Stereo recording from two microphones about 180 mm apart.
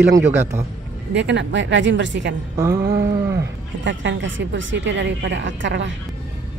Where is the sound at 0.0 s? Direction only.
10° right (ahead or behind).